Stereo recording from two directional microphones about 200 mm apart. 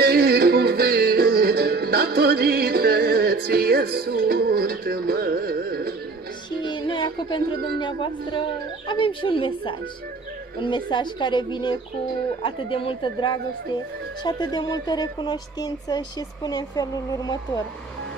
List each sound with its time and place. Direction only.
0.0 s music: 50° right (ahead or behind)
6.6 s speech: 25° left (ahead or behind)